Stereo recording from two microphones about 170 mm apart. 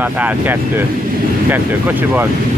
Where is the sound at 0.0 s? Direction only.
10° right (ahead or behind).